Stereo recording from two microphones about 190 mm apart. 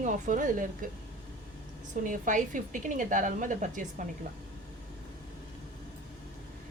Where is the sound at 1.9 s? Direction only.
45° right (ahead or behind).